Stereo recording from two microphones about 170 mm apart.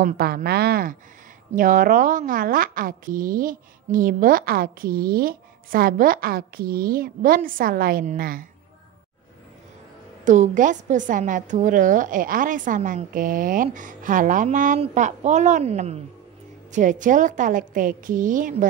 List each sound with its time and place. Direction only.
0.0 s a woman's voice: 65° right (ahead or behind)
10.2 s a woman's voice: 45° right (ahead or behind)